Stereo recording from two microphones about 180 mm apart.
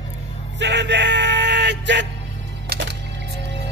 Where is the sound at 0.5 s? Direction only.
75° right (ahead or behind).